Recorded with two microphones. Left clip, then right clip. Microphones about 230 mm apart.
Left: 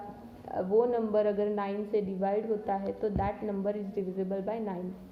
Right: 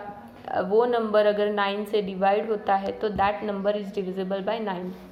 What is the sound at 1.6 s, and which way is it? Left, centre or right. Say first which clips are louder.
Speech: right 6 dB; centre.